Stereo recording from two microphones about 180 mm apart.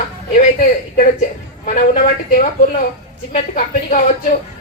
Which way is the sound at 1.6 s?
45° left (ahead or behind).